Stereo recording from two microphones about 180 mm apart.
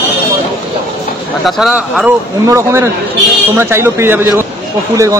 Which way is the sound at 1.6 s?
5° right (ahead or behind).